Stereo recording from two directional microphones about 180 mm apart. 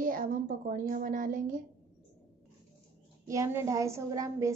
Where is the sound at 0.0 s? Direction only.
50° right (ahead or behind).